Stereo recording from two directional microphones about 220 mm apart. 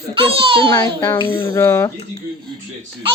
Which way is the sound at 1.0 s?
20° left (ahead or behind).